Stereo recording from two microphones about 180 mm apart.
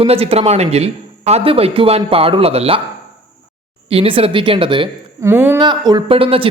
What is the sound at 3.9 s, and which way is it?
A woman's voice, 30° right (ahead or behind).